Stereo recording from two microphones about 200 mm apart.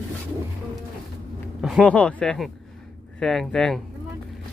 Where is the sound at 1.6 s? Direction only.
Centre (ahead or behind).